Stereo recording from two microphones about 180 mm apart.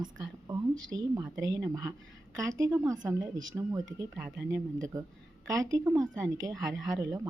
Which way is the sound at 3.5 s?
5° right (ahead or behind).